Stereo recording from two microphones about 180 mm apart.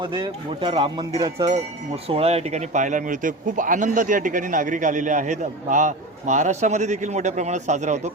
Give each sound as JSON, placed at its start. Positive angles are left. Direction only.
{"t": 0.0, "sound": "a man's voice", "side_deg": -25}